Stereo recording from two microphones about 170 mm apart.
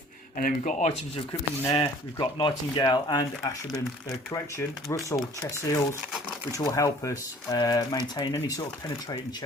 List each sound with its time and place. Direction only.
0.3 s speech: 50° left (ahead or behind)
1.3 s speech: 30° left (ahead or behind)